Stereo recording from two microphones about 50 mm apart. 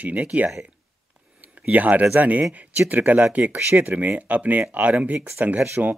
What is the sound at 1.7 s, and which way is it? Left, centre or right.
Speech, right.